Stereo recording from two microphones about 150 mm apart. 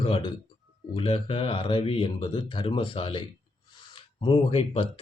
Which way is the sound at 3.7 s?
35° left (ahead or behind).